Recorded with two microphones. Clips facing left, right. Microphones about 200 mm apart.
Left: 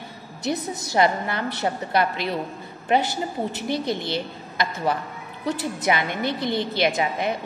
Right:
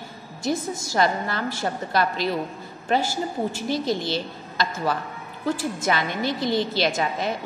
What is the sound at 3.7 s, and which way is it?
Speech, 60° left (ahead or behind).